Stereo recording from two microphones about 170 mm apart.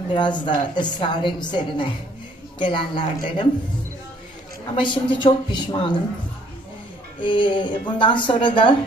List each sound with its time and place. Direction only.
0.1 s a woman's voice: 25° left (ahead or behind)
4.7 s a woman's voice: 30° left (ahead or behind)
7.2 s a woman's voice: 30° left (ahead or behind)